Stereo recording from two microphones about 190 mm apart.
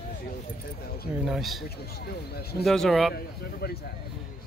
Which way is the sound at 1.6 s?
55° left (ahead or behind).